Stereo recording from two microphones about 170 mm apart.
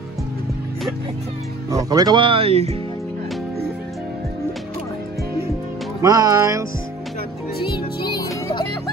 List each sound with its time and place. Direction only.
1.7 s speech: 20° right (ahead or behind); by 2.8 s 35° right (ahead or behind)
6.0 s speech: 20° right (ahead or behind)
8.1 s music: 25° left (ahead or behind)